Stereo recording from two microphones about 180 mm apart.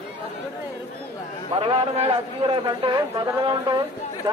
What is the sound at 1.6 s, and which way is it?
A man's voice, 35° right (ahead or behind).